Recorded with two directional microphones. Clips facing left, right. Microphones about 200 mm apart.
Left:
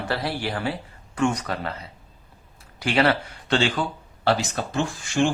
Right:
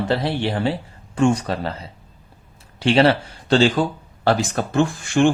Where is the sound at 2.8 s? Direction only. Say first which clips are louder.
Right 5 dB; 30° right (ahead or behind).